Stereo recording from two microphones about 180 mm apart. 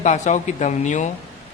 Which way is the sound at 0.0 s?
40° left (ahead or behind).